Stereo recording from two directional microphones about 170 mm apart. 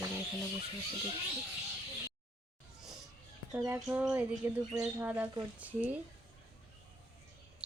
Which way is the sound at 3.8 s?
5° right (ahead or behind).